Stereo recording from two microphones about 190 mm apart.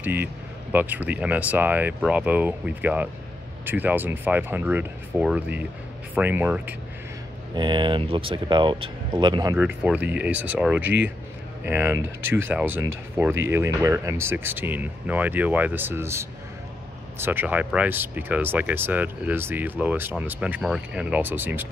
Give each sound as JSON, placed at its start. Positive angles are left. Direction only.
{"t": 0.0, "sound": "speech", "side_deg": -10}
{"t": 7.5, "sound": "speech", "side_deg": -25}